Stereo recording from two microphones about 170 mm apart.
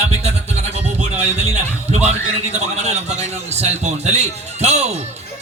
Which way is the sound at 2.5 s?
40° right (ahead or behind).